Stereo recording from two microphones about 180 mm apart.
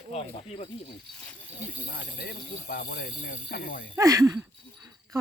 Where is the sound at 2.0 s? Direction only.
60° left (ahead or behind).